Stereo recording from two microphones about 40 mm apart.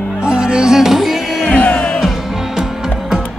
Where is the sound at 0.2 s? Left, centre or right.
Right.